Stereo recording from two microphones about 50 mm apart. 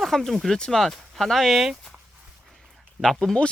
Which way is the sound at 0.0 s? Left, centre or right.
Centre.